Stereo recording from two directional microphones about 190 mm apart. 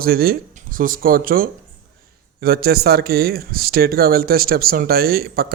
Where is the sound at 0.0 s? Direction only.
50° right (ahead or behind).